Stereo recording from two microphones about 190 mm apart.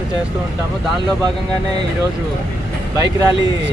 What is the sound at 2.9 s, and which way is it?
Speech, 15° right (ahead or behind).